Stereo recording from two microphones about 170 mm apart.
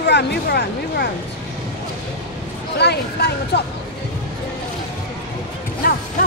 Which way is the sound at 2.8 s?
75° left (ahead or behind).